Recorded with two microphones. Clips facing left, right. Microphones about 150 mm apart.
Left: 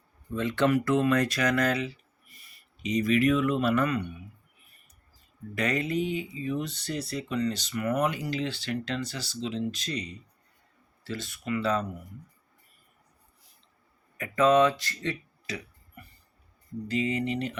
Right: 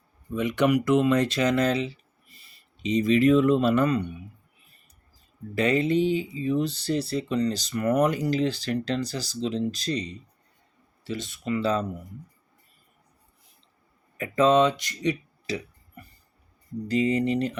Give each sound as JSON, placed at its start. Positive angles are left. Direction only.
{"t": 0.3, "sound": "speech", "side_deg": -15}
{"t": 5.5, "sound": "speech", "side_deg": -30}
{"t": 11.0, "sound": "speech", "side_deg": -20}
{"t": 14.2, "sound": "speech", "side_deg": -30}
{"t": 15.4, "sound": "burping", "side_deg": -30}
{"t": 16.9, "sound": "speech", "side_deg": -40}